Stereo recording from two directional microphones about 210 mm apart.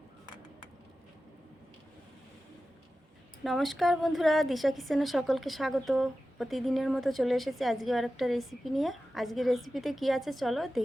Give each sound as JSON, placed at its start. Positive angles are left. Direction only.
{"t": 3.4, "sound": "a woman's voice", "side_deg": 0}